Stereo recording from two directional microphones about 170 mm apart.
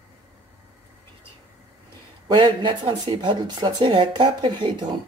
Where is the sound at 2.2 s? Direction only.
30° right (ahead or behind).